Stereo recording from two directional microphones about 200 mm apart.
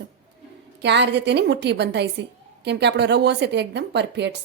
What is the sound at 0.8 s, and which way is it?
A woman's voice, 60° right (ahead or behind).